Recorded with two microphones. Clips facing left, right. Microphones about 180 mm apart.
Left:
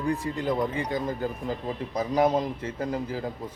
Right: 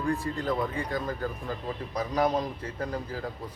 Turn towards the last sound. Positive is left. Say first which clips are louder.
# left 4 dB
turn(degrees=20)  # may be behind; listen again after turning